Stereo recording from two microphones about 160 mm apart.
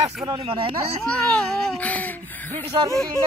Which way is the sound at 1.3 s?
10° left (ahead or behind).